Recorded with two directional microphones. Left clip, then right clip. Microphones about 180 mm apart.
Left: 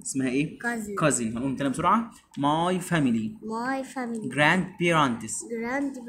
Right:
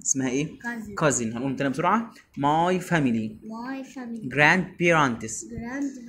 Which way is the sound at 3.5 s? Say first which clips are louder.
Left 11 dB; 65° left (ahead or behind).